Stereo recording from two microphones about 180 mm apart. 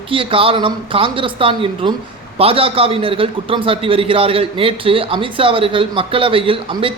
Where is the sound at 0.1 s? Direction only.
30° right (ahead or behind).